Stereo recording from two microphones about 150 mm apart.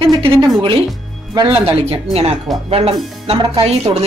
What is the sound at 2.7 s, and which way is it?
A woman's voice, 40° right (ahead or behind).